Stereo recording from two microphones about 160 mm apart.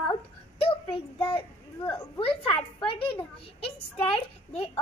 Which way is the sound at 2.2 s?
35° left (ahead or behind).